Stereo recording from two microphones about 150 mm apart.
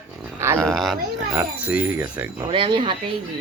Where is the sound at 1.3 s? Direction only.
10° right (ahead or behind).